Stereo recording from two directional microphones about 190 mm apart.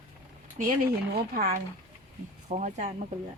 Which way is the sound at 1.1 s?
55° right (ahead or behind).